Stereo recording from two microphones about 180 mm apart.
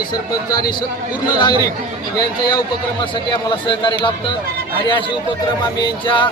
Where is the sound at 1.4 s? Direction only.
25° left (ahead or behind).